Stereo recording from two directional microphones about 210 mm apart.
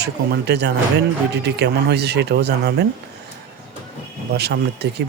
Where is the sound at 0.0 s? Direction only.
50° right (ahead or behind).